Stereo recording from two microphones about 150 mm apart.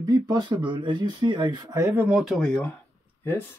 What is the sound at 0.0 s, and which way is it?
Speech, 25° right (ahead or behind).